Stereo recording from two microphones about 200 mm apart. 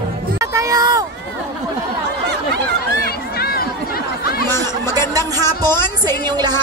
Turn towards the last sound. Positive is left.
turn(degrees=-20)  # may be behind; listen again after turning